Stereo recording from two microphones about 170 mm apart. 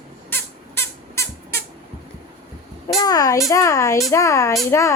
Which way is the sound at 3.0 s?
20° left (ahead or behind).